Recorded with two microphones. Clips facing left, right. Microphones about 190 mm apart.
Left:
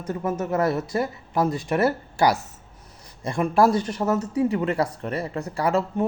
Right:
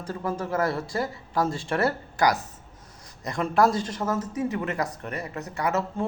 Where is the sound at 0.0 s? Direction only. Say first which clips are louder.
Left 3 dB; 20° left (ahead or behind).